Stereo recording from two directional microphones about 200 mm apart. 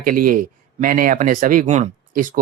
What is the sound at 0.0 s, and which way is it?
Speech, 45° right (ahead or behind).